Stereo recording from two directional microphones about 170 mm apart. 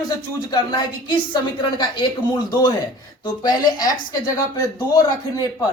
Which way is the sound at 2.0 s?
25° left (ahead or behind).